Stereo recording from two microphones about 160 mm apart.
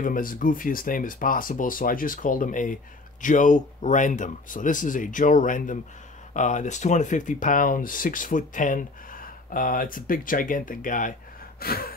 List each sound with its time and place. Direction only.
0.0 s speech: 60° left (ahead or behind)
11.6 s gasp: 70° left (ahead or behind)